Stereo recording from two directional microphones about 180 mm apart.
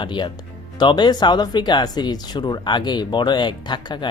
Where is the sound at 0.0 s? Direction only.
25° left (ahead or behind).